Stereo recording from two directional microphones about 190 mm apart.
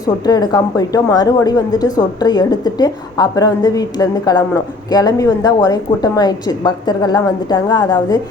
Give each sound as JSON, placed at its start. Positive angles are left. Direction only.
{"t": 0.0, "sound": "a woman's voice", "side_deg": 20}